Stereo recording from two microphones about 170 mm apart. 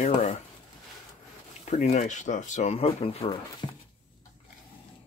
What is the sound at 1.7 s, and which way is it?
Speech, 40° left (ahead or behind).